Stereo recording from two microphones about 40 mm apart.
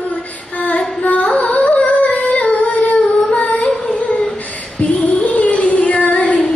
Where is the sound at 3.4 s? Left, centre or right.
Left.